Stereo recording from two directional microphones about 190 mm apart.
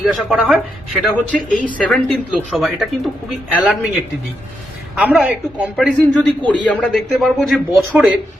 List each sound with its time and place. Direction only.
0.0 s speech: centre (ahead or behind)
1.0 s speech: 5° left (ahead or behind)
4.9 s a woman's voice: 10° right (ahead or behind)
6.1 s a woman's voice: 5° left (ahead or behind)